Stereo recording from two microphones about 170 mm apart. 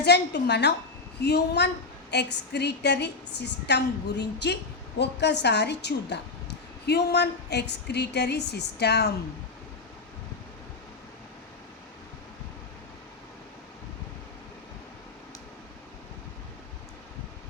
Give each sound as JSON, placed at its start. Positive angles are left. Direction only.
{"t": 0.0, "sound": "a woman's voice", "side_deg": 80}